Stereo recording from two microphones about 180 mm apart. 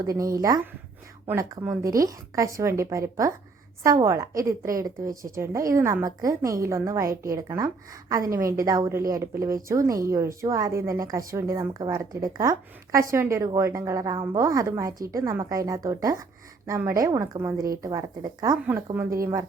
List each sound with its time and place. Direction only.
0.0 s a woman's voice: 20° right (ahead or behind)